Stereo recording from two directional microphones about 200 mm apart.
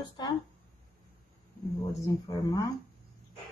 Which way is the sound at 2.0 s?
20° left (ahead or behind).